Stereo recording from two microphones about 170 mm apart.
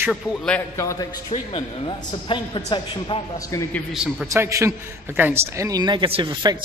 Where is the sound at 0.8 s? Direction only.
20° left (ahead or behind).